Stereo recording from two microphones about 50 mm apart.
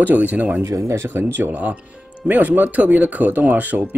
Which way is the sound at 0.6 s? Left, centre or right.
Right.